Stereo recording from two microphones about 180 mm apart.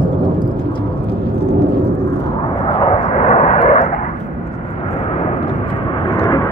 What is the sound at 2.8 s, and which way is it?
Vehicle, 35° left (ahead or behind).